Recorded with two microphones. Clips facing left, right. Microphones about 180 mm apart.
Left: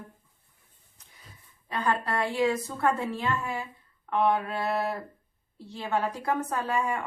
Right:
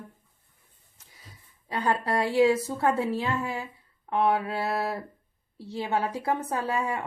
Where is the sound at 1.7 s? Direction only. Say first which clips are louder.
Right 2 dB; 35° right (ahead or behind).